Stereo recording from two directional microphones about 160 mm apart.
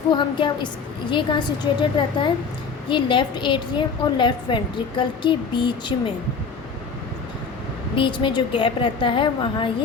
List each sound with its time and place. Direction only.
0.1 s a woman's voice: 30° left (ahead or behind)
7.9 s a woman's voice: 30° left (ahead or behind)